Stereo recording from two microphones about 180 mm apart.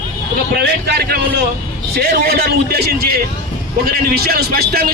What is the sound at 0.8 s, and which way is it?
A man's voice, 65° right (ahead or behind).